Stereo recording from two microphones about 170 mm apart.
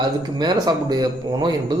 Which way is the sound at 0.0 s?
25° right (ahead or behind).